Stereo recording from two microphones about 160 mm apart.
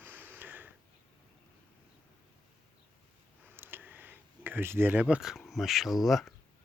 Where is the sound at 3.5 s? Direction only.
15° right (ahead or behind).